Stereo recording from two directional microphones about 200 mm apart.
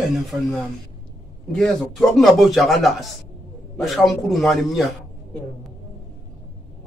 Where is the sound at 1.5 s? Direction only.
Centre (ahead or behind).